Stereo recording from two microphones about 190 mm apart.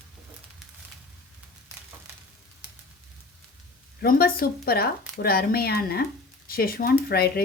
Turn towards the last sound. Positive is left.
turn(degrees=55)  # may be behind; listen again after turning